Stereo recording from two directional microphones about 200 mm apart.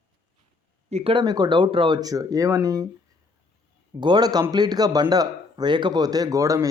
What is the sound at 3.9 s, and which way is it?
A man's voice, 20° right (ahead or behind).